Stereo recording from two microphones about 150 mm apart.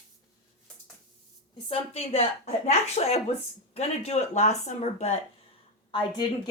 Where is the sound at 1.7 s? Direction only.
40° left (ahead or behind).